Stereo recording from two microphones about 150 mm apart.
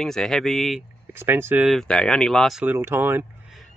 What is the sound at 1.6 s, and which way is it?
Speech, centre (ahead or behind).